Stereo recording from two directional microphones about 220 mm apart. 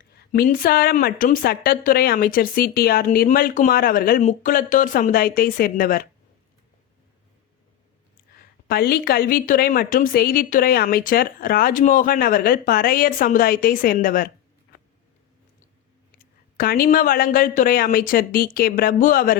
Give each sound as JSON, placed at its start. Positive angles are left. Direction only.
{"t": 0.0, "sound": "a woman's voice", "side_deg": 45}
{"t": 8.4, "sound": "a woman's voice", "side_deg": 45}
{"t": 16.1, "sound": "a woman's voice", "side_deg": 40}